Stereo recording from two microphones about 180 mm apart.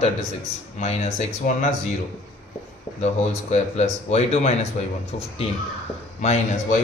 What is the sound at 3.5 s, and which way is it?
Speech, 35° left (ahead or behind).